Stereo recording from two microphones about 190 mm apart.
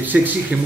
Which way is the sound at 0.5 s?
5° right (ahead or behind).